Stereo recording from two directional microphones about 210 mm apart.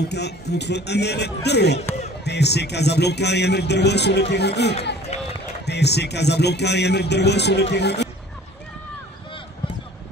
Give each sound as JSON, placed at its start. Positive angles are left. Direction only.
{"t": 0.1, "sound": "a man's voice", "side_deg": 55}
{"t": 5.1, "sound": "run", "side_deg": 30}
{"t": 5.7, "sound": "a man's voice", "side_deg": 55}